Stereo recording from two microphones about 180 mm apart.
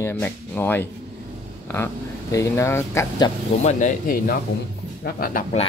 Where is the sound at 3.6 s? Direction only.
45° left (ahead or behind).